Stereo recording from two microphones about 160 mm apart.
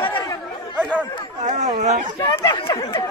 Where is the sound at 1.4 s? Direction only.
50° right (ahead or behind).